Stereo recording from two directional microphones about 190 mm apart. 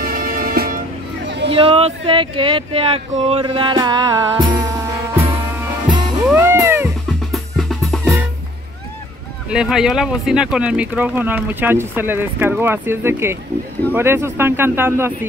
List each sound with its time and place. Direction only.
0.0 s music: 50° right (ahead or behind)
1.2 s a sound: 65° right (ahead or behind)
1.5 s speech: 30° right (ahead or behind); by 5.7 s 10° right (ahead or behind)
6.2 s music: 10° right (ahead or behind)
7.3 s drum: centre (ahead or behind)
9.5 s speech: 5° right (ahead or behind)